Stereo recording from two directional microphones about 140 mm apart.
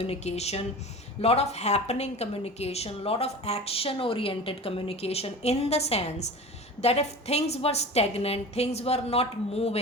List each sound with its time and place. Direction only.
0.0 s a woman's voice: 45° left (ahead or behind)